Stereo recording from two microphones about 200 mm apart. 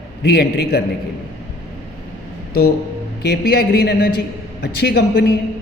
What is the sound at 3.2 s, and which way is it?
A man's voice, 55° left (ahead or behind).